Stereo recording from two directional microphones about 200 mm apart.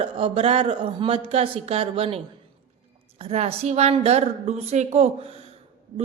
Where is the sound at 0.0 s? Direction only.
30° right (ahead or behind).